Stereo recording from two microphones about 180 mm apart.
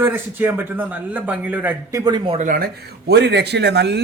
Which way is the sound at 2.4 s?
50° right (ahead or behind).